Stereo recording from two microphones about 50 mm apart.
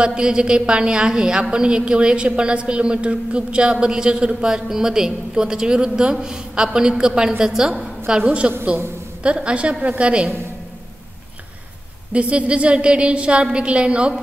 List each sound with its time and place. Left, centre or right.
0.0 s a woman's voice: centre
8.3 s a woman's voice: right
12.1 s a woman's voice: right